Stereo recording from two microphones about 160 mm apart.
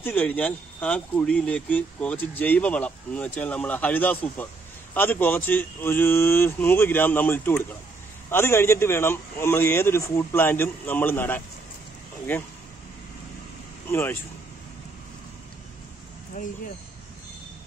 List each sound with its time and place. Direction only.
0.0 s speech: 10° left (ahead or behind)
13.8 s speech: 15° left (ahead or behind)
16.4 s speech: 55° left (ahead or behind)